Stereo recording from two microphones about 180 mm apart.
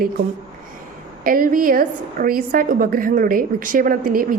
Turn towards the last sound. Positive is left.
turn(degrees=-50)  # may be behind; listen again after turning